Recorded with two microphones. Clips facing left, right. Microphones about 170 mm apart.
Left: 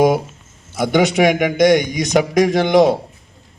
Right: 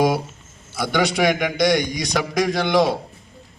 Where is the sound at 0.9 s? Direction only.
20° left (ahead or behind).